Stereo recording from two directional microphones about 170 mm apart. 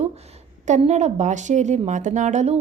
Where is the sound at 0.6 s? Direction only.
45° right (ahead or behind).